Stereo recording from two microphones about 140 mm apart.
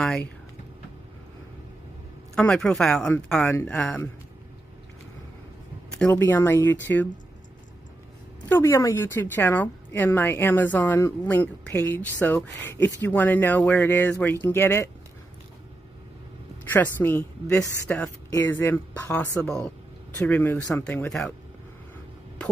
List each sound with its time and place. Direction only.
2.3 s a man's voice: 5° left (ahead or behind)
5.9 s a woman's voice: 15° left (ahead or behind)
8.5 s a woman's voice: 20° left (ahead or behind)
16.6 s a woman's voice: 15° left (ahead or behind)